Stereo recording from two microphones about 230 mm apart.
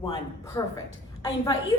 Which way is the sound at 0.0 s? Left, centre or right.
Centre.